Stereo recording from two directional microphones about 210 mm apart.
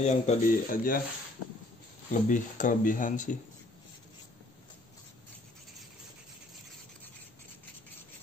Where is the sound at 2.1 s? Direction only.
35° left (ahead or behind).